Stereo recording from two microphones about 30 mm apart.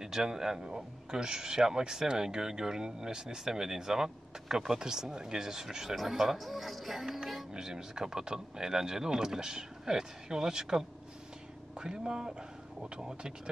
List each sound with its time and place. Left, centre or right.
0.0 s speech: right
5.9 s speech: centre
7.5 s speech: right
11.8 s speech: right